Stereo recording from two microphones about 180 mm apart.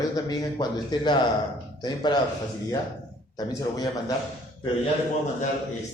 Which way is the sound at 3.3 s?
20° left (ahead or behind).